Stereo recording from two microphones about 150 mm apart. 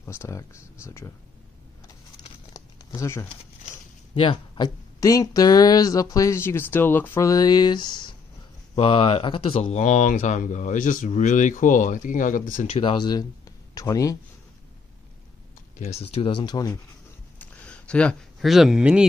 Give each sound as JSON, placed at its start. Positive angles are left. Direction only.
{"t": 0.0, "sound": "speech", "side_deg": 15}
{"t": 2.5, "sound": "crumpling", "side_deg": 25}
{"t": 4.1, "sound": "speech", "side_deg": 35}
{"t": 5.0, "sound": "speech", "side_deg": 20}
{"t": 12.6, "sound": "speech", "side_deg": 40}
{"t": 15.8, "sound": "speech", "side_deg": 45}
{"t": 17.4, "sound": "a sound", "side_deg": 10}